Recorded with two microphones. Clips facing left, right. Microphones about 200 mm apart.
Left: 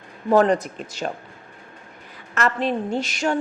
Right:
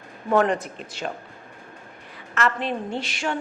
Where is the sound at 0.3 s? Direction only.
35° left (ahead or behind).